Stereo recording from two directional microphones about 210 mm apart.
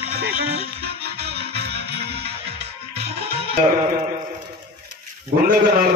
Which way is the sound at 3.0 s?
25° right (ahead or behind).